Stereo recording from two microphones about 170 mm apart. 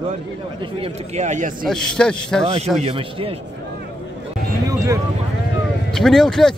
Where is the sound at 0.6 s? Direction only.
35° right (ahead or behind); by 1.7 s 50° right (ahead or behind).